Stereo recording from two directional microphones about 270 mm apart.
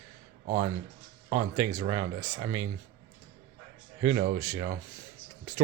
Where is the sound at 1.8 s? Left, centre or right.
Centre.